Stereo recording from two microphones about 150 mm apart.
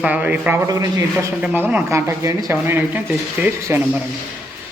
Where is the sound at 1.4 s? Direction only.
10° right (ahead or behind).